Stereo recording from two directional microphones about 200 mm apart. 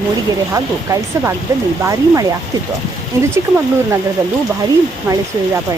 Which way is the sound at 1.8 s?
15° right (ahead or behind).